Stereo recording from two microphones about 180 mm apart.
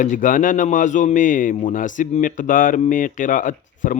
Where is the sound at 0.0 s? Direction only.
45° left (ahead or behind).